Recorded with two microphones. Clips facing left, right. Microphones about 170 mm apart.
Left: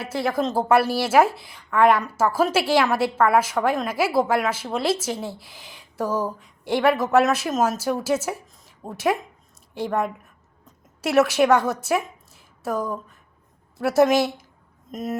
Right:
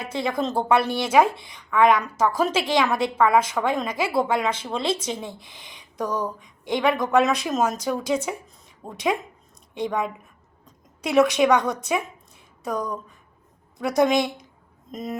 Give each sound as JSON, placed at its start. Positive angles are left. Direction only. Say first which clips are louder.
{"t": 0.0, "sound": "a woman's voice", "louder": "left 2 dB", "side_deg": 5}